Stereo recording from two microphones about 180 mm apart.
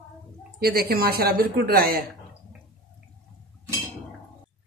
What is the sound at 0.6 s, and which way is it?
Speech, 55° right (ahead or behind).